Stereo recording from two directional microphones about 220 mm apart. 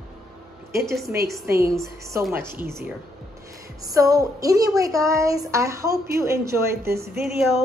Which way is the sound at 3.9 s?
15° right (ahead or behind).